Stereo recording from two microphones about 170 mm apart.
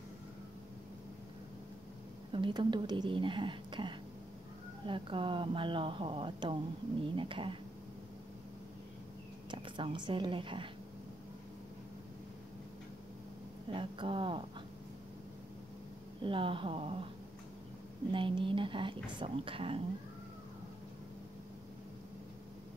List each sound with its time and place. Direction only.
2.3 s speech: 30° right (ahead or behind)
9.5 s speech: 30° right (ahead or behind)
13.7 s speech: 30° right (ahead or behind)
16.2 s speech: 30° right (ahead or behind)
18.1 s speech: 30° right (ahead or behind)